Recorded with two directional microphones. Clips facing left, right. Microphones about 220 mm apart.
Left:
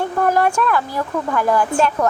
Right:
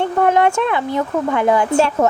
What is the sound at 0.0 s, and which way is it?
A woman's voice, 25° right (ahead or behind).